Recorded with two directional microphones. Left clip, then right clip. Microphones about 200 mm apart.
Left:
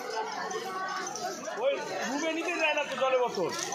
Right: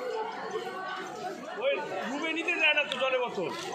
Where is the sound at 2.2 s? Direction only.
45° left (ahead or behind).